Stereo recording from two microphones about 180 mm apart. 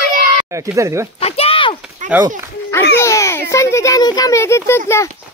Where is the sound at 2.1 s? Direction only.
10° right (ahead or behind).